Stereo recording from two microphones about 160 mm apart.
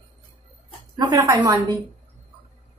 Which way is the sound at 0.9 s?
25° right (ahead or behind).